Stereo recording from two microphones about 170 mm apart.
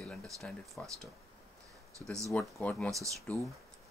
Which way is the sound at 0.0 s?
5° left (ahead or behind).